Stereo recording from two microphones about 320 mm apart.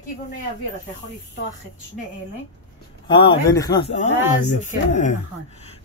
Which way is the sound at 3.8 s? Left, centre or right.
Left.